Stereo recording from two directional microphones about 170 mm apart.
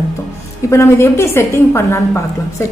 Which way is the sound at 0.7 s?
15° left (ahead or behind).